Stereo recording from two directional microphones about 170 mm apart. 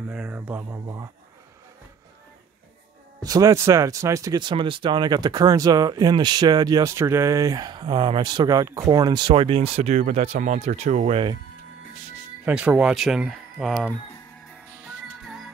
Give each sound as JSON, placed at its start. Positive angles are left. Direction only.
{"t": 0.0, "sound": "speech", "side_deg": -5}
{"t": 3.2, "sound": "speech", "side_deg": -20}
{"t": 12.4, "sound": "speech", "side_deg": -5}